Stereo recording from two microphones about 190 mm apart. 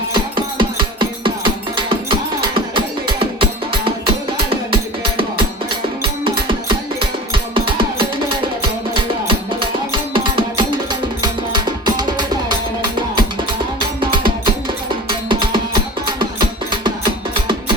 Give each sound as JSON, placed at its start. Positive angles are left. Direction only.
{"t": 0.1, "sound": "music", "side_deg": -25}